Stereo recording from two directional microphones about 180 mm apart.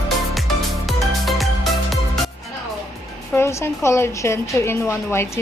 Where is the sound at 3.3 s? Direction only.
15° left (ahead or behind).